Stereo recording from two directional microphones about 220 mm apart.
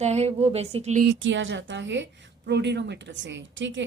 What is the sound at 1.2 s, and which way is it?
A woman's voice, 60° right (ahead or behind).